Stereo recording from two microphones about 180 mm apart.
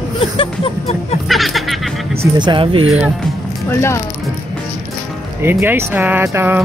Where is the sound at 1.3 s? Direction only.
Centre (ahead or behind).